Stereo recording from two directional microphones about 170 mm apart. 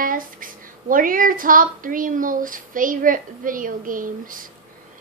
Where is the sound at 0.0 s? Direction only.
55° right (ahead or behind).